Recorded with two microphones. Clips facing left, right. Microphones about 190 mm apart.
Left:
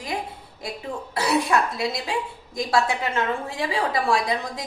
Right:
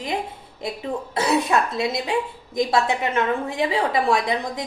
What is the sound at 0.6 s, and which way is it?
A woman's voice, 25° right (ahead or behind).